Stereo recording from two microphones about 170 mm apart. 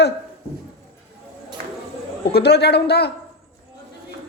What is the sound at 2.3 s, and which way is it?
Speech, 75° left (ahead or behind).